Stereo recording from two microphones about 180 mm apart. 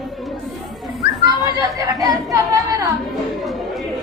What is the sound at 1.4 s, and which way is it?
Speech, 20° right (ahead or behind).